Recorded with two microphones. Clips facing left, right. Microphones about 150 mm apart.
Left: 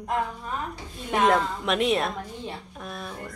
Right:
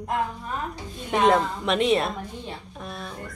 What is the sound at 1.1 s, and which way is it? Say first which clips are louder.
Speech: right 2 dB; centre (ahead or behind).